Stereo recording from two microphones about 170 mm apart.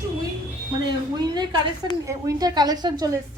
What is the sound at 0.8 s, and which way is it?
A woman's voice, 25° right (ahead or behind).